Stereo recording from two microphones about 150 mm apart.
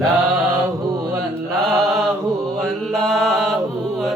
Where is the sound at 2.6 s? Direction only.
5° left (ahead or behind).